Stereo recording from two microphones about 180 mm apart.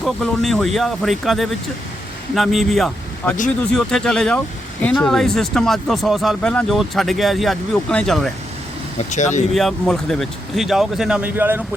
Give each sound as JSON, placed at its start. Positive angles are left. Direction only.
{"t": 0.0, "sound": "speech", "side_deg": 0}
{"t": 9.0, "sound": "speech", "side_deg": 40}
{"t": 9.5, "sound": "speech", "side_deg": 0}